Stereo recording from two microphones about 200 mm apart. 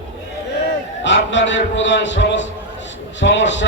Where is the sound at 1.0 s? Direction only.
65° left (ahead or behind).